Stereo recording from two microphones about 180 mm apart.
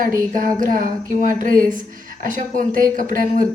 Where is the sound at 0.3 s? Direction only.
50° right (ahead or behind).